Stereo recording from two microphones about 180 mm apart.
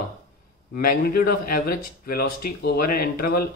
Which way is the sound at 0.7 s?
55° left (ahead or behind).